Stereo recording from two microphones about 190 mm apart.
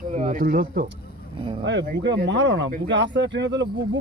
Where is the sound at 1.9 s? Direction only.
65° right (ahead or behind).